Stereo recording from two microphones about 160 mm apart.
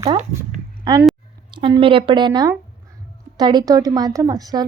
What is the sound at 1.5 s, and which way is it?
A woman's voice, 30° right (ahead or behind).